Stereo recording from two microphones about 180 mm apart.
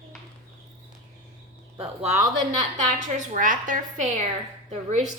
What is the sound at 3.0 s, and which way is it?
A woman's voice, 45° right (ahead or behind).